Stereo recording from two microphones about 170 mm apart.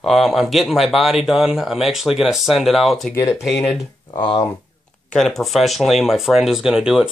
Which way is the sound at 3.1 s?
15° left (ahead or behind).